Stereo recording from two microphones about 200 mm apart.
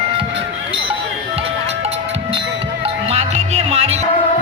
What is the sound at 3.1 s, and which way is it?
Music, 30° right (ahead or behind).